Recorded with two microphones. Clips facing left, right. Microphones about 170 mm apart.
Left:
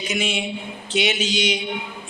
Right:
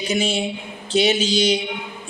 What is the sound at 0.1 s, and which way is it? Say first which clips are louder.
A man's voice: right 4 dB; 30° right (ahead or behind).